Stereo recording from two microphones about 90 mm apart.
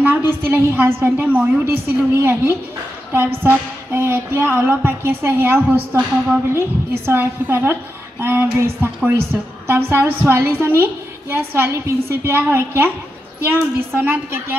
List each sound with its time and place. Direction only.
0.0 s a woman's voice: 25° right (ahead or behind)